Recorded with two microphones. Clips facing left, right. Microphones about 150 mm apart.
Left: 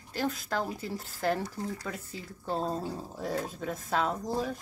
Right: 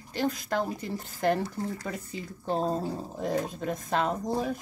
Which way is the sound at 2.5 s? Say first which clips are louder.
Right 4 dB; 15° right (ahead or behind).